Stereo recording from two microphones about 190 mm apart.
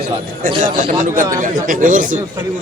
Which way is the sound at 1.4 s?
45° right (ahead or behind).